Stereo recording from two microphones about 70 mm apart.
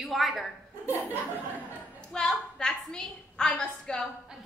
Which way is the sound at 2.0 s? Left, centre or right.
Centre.